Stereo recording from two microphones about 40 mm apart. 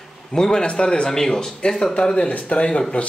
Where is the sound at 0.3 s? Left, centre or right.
Centre.